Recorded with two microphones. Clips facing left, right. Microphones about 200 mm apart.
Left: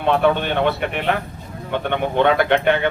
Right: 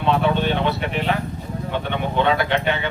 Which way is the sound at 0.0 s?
55° left (ahead or behind).